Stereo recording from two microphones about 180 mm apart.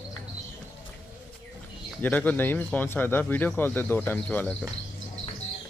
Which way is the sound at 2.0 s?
10° left (ahead or behind).